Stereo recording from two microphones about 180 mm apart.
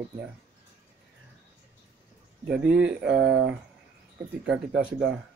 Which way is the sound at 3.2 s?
90° right.